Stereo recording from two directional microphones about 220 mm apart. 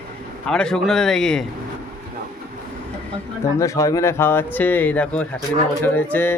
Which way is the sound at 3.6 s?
15° left (ahead or behind).